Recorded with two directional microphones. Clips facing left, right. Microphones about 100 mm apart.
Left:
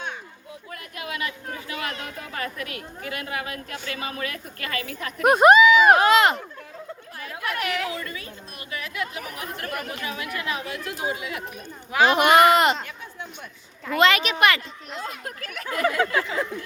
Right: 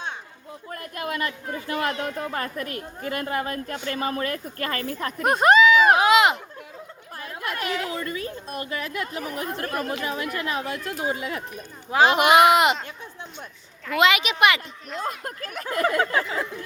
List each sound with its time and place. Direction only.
0.7 s a woman's voice: 45° right (ahead or behind)
5.2 s speech: 10° left (ahead or behind)
6.0 s a sound: 10° right (ahead or behind)
7.2 s chatter: 35° right (ahead or behind)
8.2 s a woman's voice: 40° right (ahead or behind)
12.1 s speech: 5° right (ahead or behind)
13.9 s speech: 10° right (ahead or behind)
15.2 s a woman's voice: 35° right (ahead or behind)